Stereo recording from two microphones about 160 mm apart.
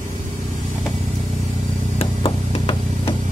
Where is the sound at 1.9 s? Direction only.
35° left (ahead or behind).